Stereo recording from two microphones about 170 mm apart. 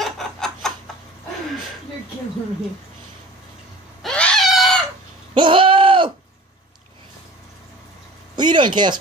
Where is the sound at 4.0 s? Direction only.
5° left (ahead or behind).